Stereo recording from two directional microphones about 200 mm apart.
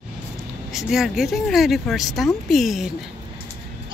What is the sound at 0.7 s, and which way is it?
Speech, centre (ahead or behind).